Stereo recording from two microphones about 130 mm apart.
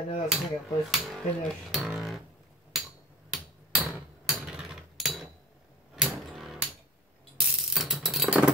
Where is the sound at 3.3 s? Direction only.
5° right (ahead or behind).